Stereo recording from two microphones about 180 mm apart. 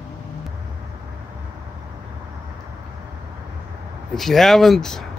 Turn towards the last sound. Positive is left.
turn(degrees=5)  # may be behind; listen again after turning